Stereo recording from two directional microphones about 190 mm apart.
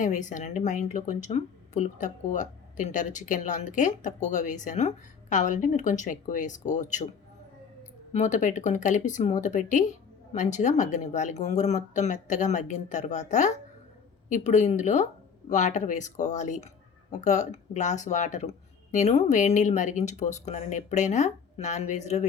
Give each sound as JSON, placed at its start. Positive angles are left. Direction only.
{"t": 0.0, "sound": "speech", "side_deg": 40}
{"t": 8.1, "sound": "speech", "side_deg": 40}